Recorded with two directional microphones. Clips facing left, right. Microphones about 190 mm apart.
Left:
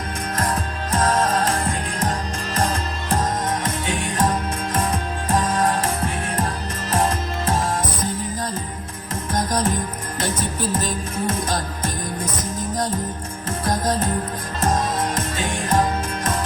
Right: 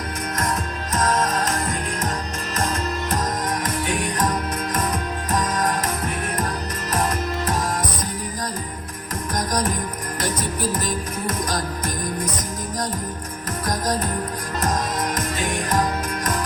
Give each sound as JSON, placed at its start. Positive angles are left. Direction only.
{"t": 0.3, "sound": "music", "side_deg": 30}
{"t": 9.3, "sound": "music", "side_deg": 25}